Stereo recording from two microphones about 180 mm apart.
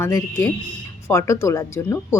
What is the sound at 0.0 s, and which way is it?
A woman's voice, 15° left (ahead or behind).